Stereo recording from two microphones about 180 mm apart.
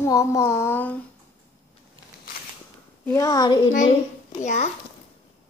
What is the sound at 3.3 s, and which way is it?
Speech, 20° left (ahead or behind).